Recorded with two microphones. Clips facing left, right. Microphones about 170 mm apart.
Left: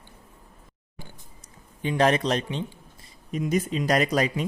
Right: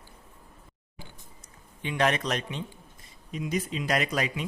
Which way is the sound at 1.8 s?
35° left (ahead or behind).